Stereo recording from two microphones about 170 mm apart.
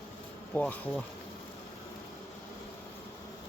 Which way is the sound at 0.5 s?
10° left (ahead or behind).